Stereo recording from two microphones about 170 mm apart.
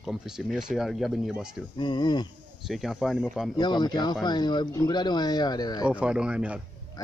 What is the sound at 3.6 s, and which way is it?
Speech, 25° left (ahead or behind).